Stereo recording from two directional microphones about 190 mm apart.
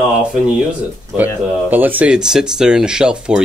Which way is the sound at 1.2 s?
10° right (ahead or behind).